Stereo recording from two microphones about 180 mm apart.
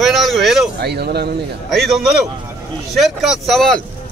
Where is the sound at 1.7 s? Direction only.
Centre (ahead or behind).